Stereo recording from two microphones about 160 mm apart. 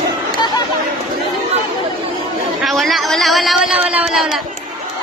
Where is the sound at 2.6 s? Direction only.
Centre (ahead or behind).